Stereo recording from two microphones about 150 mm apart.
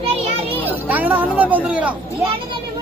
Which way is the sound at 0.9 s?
10° right (ahead or behind).